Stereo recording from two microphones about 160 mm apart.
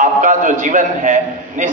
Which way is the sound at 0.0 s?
55° right (ahead or behind).